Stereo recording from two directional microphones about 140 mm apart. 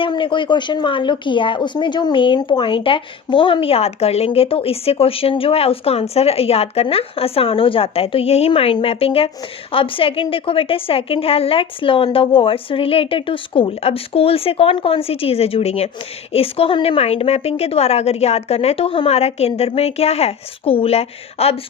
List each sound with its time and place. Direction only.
0.0 s a woman's voice: 35° left (ahead or behind)